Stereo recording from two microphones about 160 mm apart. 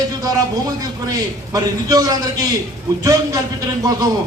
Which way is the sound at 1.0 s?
25° right (ahead or behind).